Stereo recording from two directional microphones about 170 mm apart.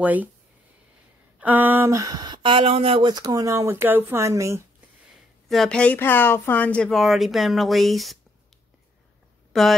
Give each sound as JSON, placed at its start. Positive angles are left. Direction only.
{"t": 0.0, "sound": "speech", "side_deg": -10}
{"t": 1.4, "sound": "speech", "side_deg": -10}
{"t": 5.5, "sound": "speech", "side_deg": 5}
{"t": 9.5, "sound": "speech", "side_deg": 0}